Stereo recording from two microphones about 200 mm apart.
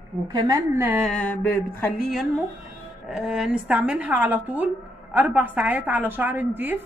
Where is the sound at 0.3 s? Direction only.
20° right (ahead or behind).